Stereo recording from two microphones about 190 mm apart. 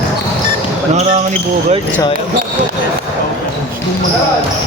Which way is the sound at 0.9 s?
35° right (ahead or behind).